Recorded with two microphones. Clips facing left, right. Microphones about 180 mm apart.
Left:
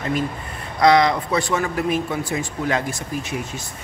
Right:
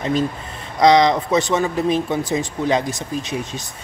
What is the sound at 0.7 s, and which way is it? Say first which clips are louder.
Speech: right 2 dB; 20° right (ahead or behind).